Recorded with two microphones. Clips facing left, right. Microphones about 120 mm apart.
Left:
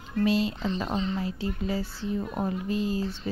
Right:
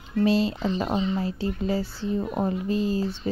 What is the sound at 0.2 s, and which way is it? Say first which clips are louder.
Speech: right 3 dB; 35° right (ahead or behind).